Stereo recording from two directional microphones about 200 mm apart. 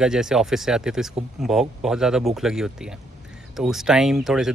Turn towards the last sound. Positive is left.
turn(degrees=0)  # may be behind; listen again after turning